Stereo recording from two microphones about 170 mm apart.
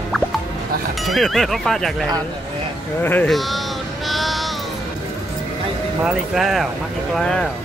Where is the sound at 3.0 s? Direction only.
10° left (ahead or behind).